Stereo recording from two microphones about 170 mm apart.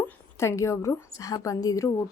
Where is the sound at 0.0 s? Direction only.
15° left (ahead or behind).